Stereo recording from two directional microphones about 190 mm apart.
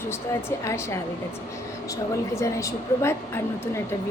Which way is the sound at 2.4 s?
15° left (ahead or behind).